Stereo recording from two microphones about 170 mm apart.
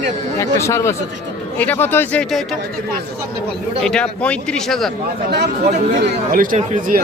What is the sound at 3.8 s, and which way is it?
Speech, 5° left (ahead or behind).